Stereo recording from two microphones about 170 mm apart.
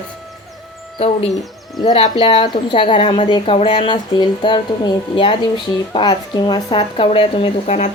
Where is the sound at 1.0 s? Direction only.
35° left (ahead or behind).